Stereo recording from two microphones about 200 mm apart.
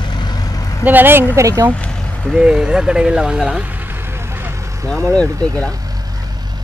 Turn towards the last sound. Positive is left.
turn(degrees=5)  # may be behind; listen again after turning